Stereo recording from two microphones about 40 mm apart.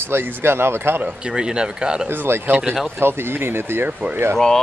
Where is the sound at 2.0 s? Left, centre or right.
Right.